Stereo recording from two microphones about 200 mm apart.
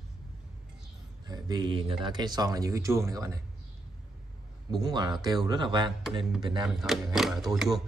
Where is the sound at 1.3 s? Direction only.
20° right (ahead or behind).